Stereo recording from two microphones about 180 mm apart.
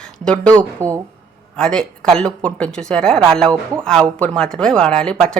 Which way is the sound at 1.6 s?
5° left (ahead or behind).